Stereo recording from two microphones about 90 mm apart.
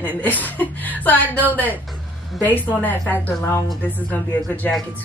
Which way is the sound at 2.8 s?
20° left (ahead or behind).